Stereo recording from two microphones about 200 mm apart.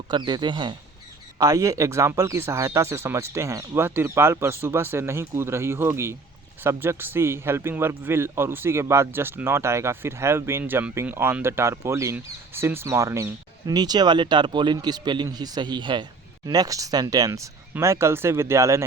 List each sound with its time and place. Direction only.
0.1 s a man's voice: 20° right (ahead or behind)